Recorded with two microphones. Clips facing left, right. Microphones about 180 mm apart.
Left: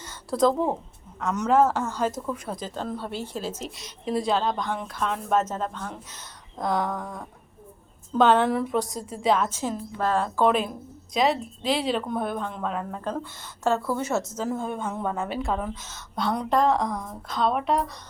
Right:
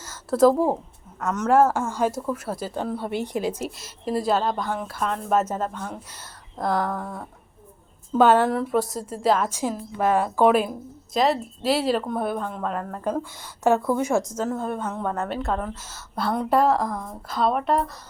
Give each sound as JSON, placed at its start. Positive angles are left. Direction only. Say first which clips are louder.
{"t": 0.0, "sound": "a sound", "louder": "right 5 dB", "side_deg": -5}
{"t": 1.2, "sound": "speech", "louder": "right 2 dB", "side_deg": -5}
{"t": 3.8, "sound": "a woman's voice", "louder": "right 1 dB", "side_deg": 0}
{"t": 13.7, "sound": "speech", "louder": "right 4 dB", "side_deg": -15}
{"t": 14.4, "sound": "a woman's voice", "louder": "right 2 dB", "side_deg": 0}